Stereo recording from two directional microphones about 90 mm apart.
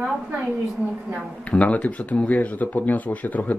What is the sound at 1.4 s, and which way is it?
Speech, 15° left (ahead or behind).